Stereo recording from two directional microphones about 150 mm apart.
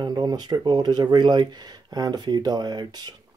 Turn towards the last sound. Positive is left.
turn(degrees=-25)  # may be behind; listen again after turning